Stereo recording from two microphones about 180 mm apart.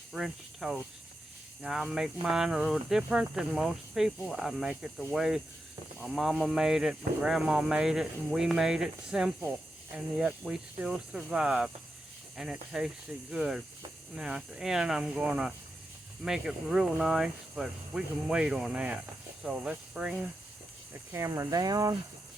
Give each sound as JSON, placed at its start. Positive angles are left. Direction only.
{"t": 0.1, "sound": "speech", "side_deg": 0}
{"t": 21.1, "sound": "cricket", "side_deg": -15}